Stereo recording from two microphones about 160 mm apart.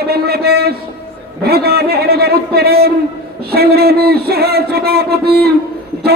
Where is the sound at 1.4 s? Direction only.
80° right.